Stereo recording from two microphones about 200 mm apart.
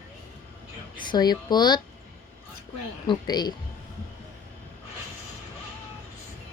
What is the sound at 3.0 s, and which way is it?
Speech, 20° left (ahead or behind).